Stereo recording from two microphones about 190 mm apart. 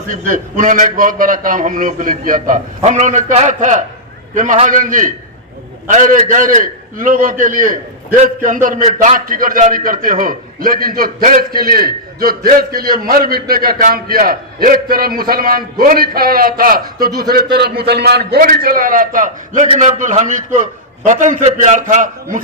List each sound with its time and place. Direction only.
0.3 s a man's voice: 45° right (ahead or behind)